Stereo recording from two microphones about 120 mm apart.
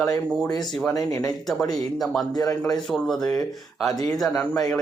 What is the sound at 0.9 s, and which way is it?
Speech, 30° left (ahead or behind).